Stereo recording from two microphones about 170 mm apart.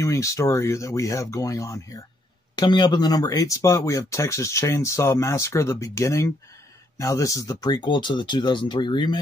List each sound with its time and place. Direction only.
0.0 s speech: 20° left (ahead or behind)